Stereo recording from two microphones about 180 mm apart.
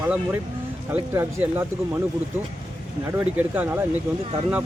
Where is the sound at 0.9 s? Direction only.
15° right (ahead or behind).